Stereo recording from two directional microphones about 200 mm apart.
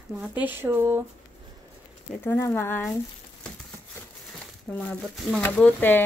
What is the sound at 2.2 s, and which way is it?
Speech, 15° left (ahead or behind).